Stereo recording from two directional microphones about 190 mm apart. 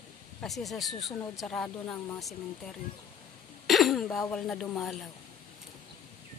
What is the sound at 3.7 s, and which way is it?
Speech, centre (ahead or behind).